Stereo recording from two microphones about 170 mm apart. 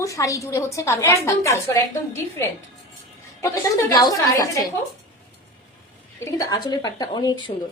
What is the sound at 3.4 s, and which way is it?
A woman's voice, 15° left (ahead or behind).